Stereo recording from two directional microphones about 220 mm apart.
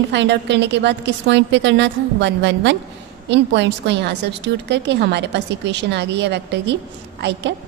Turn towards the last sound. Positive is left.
turn(degrees=-50)  # may be behind; listen again after turning